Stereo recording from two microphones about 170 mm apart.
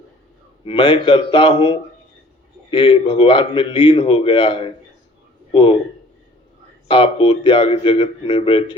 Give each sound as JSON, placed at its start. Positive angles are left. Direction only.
{"t": 0.6, "sound": "a man's voice", "side_deg": 30}
{"t": 6.8, "sound": "speech", "side_deg": 30}